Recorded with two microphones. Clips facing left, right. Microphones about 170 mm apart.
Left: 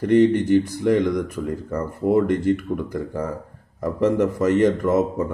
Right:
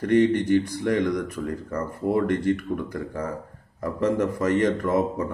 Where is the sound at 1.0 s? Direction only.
Centre (ahead or behind).